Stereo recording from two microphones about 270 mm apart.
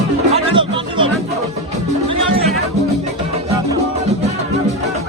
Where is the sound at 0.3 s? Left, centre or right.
Centre.